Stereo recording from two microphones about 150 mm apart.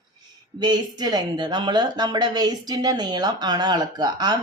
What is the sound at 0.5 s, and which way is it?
Speech, 25° right (ahead or behind).